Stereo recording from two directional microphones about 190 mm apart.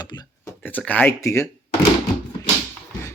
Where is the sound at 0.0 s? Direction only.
20° left (ahead or behind).